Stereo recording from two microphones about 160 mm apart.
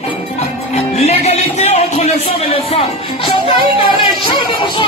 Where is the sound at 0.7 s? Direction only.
40° left (ahead or behind).